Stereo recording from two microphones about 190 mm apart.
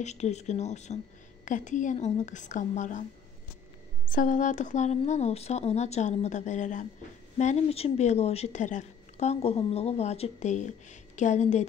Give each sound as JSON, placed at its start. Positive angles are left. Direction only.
{"t": 0.0, "sound": "speech", "side_deg": 35}
{"t": 4.1, "sound": "speech", "side_deg": 45}